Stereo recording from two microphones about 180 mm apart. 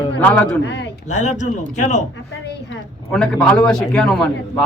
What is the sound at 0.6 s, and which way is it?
Speech, 75° left (ahead or behind).